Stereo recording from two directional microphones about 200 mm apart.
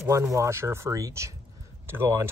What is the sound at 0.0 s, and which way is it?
Speech, 15° right (ahead or behind).